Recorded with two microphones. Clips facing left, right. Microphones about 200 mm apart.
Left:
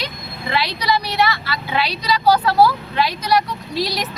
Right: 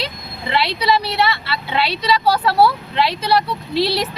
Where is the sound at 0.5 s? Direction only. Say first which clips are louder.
Right 3 dB; 25° right (ahead or behind).